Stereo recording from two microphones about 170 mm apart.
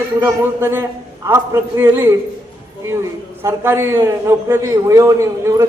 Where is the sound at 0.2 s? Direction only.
15° right (ahead or behind).